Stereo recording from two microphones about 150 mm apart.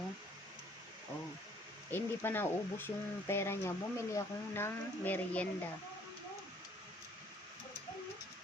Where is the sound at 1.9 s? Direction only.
15° left (ahead or behind).